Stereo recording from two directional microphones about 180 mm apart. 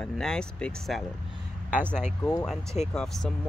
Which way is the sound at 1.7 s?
10° right (ahead or behind).